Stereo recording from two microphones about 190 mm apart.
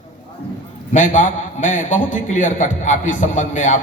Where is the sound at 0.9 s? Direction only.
40° left (ahead or behind).